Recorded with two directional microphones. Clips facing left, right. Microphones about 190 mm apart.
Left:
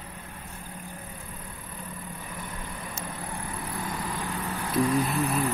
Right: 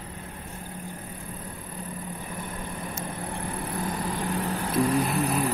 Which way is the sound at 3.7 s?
35° right (ahead or behind).